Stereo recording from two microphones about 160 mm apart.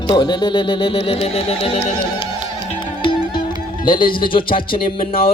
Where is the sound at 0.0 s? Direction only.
30° left (ahead or behind).